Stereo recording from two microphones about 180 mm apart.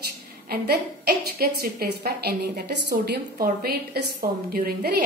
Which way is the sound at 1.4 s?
60° right (ahead or behind).